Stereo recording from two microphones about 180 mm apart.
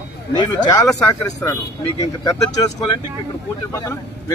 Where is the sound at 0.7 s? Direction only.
20° left (ahead or behind).